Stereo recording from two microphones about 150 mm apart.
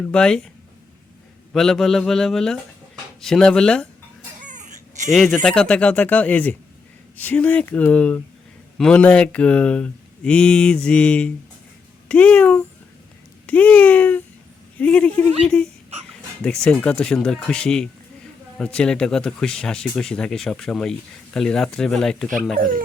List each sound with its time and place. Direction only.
0.1 s speech: 5° left (ahead or behind)
1.5 s speech: centre (ahead or behind)
4.4 s a sound: 55° right (ahead or behind)
5.1 s speech: 5° left (ahead or behind)
22.5 s speech: 65° right (ahead or behind)